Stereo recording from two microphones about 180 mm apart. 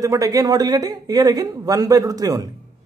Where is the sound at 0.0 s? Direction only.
20° right (ahead or behind).